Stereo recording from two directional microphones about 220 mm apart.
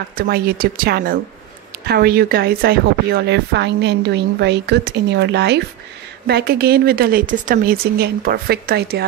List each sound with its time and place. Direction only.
0.3 s a woman's voice: 40° right (ahead or behind)